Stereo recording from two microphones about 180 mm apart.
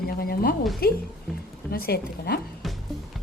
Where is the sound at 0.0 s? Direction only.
55° left (ahead or behind).